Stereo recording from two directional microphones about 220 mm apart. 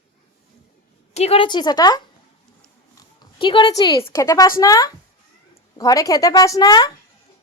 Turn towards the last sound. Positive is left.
turn(degrees=15)  # may be behind; listen again after turning